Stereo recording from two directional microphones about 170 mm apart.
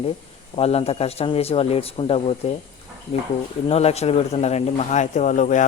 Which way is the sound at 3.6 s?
40° left (ahead or behind).